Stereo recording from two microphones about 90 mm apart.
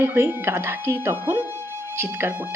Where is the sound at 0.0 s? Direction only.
25° right (ahead or behind).